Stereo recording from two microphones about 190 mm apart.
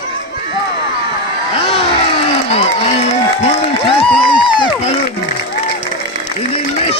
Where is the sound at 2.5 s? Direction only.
30° left (ahead or behind).